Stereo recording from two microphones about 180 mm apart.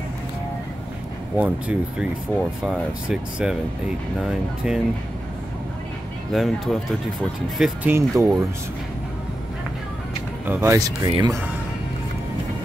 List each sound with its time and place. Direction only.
1.3 s speech: 10° right (ahead or behind)
6.3 s speech: centre (ahead or behind)
7.9 s speech: 15° right (ahead or behind)
10.4 s speech: 10° right (ahead or behind)